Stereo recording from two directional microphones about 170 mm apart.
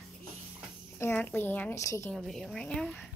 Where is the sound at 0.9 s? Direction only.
10° left (ahead or behind).